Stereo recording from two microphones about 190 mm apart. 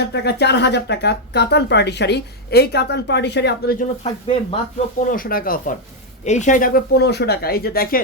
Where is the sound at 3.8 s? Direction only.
35° left (ahead or behind).